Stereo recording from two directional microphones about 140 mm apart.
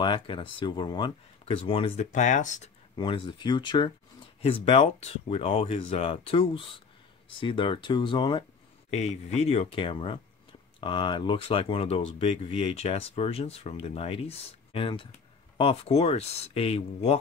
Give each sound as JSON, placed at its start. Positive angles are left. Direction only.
{"t": 0.0, "sound": "speech", "side_deg": 35}
{"t": 2.0, "sound": "speech", "side_deg": 60}
{"t": 3.0, "sound": "speech", "side_deg": 35}
{"t": 8.9, "sound": "speech", "side_deg": 50}